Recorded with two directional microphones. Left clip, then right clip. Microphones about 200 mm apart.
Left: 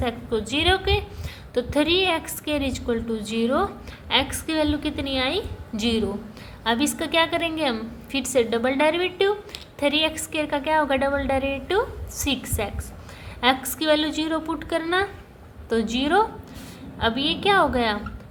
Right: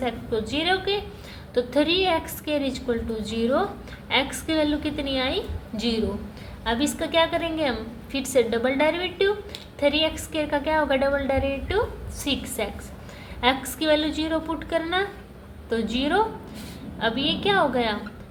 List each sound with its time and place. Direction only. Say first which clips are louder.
0.0 s a woman's voice: left 1 dB; 25° left (ahead or behind)